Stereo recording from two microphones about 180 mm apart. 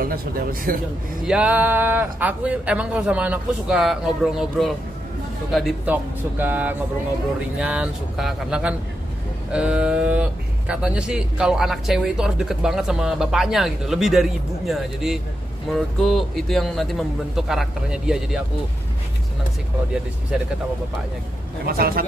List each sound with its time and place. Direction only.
0.0 s speech: 50° right (ahead or behind)
1.2 s speech: 5° right (ahead or behind)
20.3 s speech: 5° right (ahead or behind)
21.6 s a man's voice: 55° right (ahead or behind)